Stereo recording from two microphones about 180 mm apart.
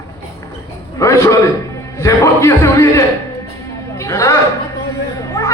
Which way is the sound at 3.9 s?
15° left (ahead or behind).